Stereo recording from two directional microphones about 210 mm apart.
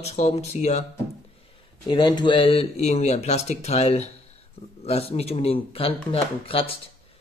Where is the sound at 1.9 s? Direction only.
20° left (ahead or behind).